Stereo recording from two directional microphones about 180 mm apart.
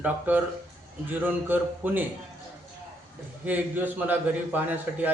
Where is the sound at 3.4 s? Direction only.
10° right (ahead or behind).